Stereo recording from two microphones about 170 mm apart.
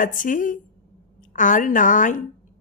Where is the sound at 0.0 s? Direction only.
50° left (ahead or behind).